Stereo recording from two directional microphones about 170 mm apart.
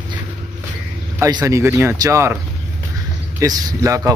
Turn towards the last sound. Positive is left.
turn(degrees=-20)  # may be behind; listen again after turning